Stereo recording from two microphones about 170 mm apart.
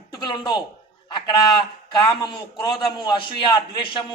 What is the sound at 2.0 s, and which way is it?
A man's voice, 25° left (ahead or behind).